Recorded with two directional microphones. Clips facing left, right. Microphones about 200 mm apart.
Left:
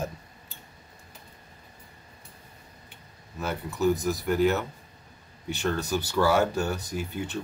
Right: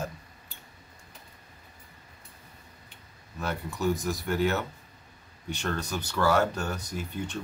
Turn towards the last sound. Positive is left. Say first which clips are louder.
# left 2 dB
turn(degrees=5)  # may be behind; listen again after turning